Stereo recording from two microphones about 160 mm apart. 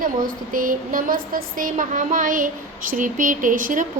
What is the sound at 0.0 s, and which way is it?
A woman's voice, 60° right (ahead or behind).